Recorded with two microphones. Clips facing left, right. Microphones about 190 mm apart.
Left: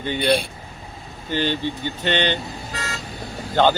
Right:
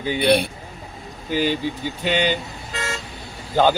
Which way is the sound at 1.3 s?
10° right (ahead or behind).